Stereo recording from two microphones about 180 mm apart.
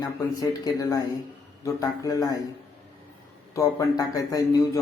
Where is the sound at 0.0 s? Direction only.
20° left (ahead or behind).